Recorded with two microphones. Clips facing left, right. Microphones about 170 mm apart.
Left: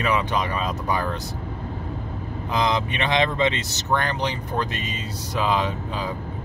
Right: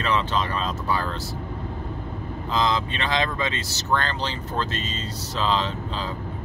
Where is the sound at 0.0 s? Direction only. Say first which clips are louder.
Left 1 dB; 15° left (ahead or behind).